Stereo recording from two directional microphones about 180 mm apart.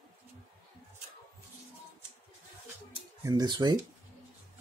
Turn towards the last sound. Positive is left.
turn(degrees=-20)  # may be behind; listen again after turning